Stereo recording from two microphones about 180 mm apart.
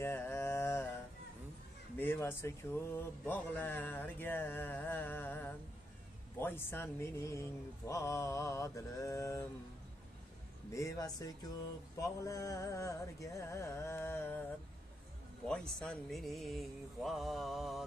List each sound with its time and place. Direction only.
0.0 s a sound: 10° left (ahead or behind)
2.0 s speech: 10° left (ahead or behind)
10.7 s speech: 20° left (ahead or behind)
15.8 s mantra: centre (ahead or behind)